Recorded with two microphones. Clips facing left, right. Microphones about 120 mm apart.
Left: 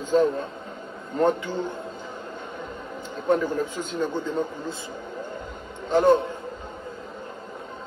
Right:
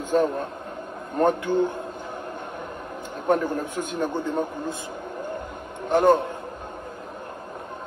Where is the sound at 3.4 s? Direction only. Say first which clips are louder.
Even; 60° right (ahead or behind).